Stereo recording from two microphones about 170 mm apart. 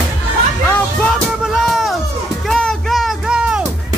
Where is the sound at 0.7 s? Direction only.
5° left (ahead or behind).